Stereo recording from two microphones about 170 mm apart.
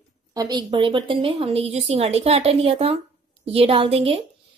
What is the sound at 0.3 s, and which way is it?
A woman's voice, 20° right (ahead or behind).